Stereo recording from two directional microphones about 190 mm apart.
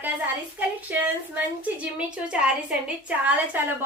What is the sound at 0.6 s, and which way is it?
Speech, 10° right (ahead or behind).